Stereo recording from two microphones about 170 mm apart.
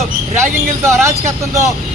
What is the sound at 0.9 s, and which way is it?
Speech, 15° right (ahead or behind).